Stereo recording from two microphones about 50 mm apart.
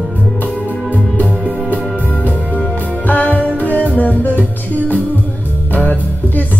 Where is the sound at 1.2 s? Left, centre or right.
Centre.